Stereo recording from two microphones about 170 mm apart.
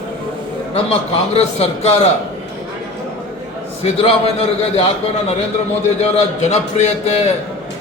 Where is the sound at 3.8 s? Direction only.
35° left (ahead or behind).